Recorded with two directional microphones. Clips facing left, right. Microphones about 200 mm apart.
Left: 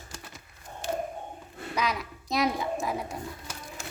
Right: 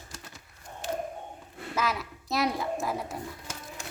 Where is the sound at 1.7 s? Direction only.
5° right (ahead or behind).